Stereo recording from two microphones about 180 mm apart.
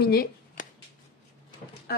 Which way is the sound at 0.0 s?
55° left (ahead or behind).